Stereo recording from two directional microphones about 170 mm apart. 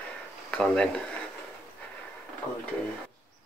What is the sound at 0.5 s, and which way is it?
Speech, 5° left (ahead or behind).